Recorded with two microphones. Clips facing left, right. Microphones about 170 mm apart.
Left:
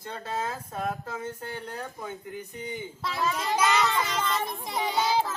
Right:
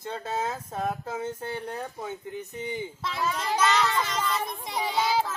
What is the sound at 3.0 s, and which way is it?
A child's voice, centre (ahead or behind).